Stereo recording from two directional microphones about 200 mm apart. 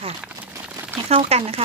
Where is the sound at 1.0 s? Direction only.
30° right (ahead or behind).